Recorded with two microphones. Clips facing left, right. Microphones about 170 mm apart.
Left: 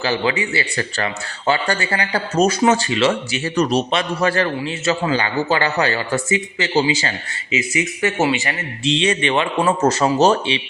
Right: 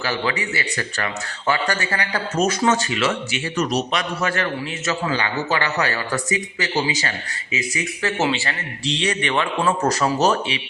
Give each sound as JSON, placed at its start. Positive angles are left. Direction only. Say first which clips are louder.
{"t": 0.0, "sound": "a man's voice", "louder": "left 4 dB", "side_deg": 25}
{"t": 8.2, "sound": "speech", "louder": "left 3 dB", "side_deg": 10}
{"t": 8.8, "sound": "a man's voice", "louder": "left 5 dB", "side_deg": 25}